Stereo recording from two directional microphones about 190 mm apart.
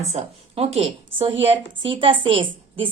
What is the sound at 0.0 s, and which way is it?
Speech, 35° right (ahead or behind).